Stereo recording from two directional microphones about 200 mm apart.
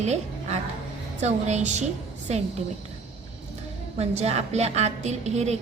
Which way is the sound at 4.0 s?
30° right (ahead or behind).